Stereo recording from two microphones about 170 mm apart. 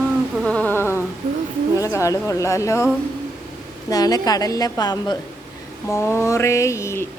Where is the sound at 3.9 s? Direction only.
20° left (ahead or behind).